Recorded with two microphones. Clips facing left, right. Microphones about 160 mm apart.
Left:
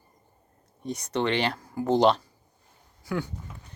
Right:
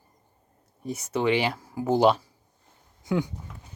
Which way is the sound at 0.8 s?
5° right (ahead or behind).